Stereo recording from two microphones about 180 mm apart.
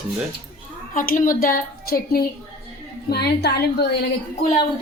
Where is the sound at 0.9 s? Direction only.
50° left (ahead or behind); by 3.9 s 65° left (ahead or behind).